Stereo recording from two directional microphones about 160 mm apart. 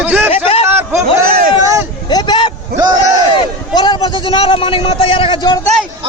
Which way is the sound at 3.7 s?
30° left (ahead or behind).